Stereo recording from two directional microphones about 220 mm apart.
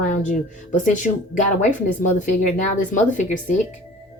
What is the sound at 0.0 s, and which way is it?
Speech, 35° left (ahead or behind).